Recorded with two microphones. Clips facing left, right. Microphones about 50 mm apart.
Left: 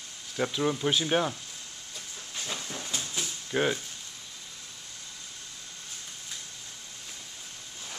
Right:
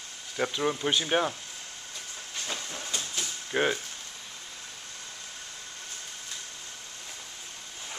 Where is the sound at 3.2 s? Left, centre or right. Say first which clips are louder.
Even; centre.